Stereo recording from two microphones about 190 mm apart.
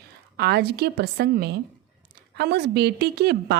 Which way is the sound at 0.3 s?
55° right (ahead or behind).